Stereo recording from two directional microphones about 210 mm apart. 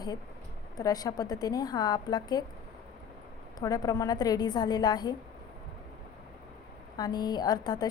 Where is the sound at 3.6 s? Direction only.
15° left (ahead or behind).